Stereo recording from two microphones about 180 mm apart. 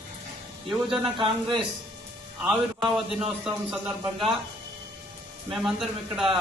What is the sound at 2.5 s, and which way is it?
A man's voice, 5° right (ahead or behind).